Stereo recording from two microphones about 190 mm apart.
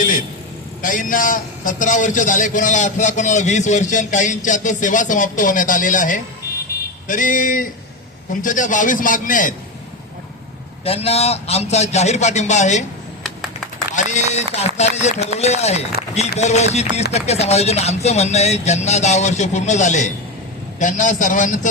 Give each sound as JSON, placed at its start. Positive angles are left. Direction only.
{"t": 0.0, "sound": "vehicle", "side_deg": 45}
{"t": 0.8, "sound": "a man's voice", "side_deg": 45}
{"t": 10.8, "sound": "speech", "side_deg": 30}
{"t": 13.9, "sound": "speech", "side_deg": 35}